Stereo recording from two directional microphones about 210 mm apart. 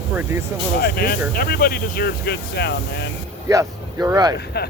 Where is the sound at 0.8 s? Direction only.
45° left (ahead or behind).